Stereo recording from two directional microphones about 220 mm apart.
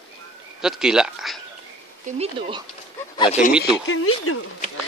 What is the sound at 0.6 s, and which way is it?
Speech, centre (ahead or behind).